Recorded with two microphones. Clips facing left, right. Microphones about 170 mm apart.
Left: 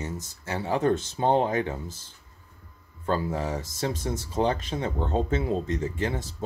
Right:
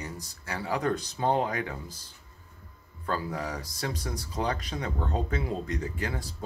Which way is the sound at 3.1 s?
25° left (ahead or behind).